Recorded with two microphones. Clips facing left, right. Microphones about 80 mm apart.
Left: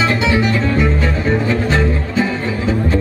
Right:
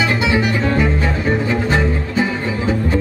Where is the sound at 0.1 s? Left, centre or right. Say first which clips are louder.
Left 1 dB; centre.